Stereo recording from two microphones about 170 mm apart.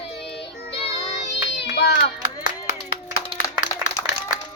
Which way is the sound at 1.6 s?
80° left.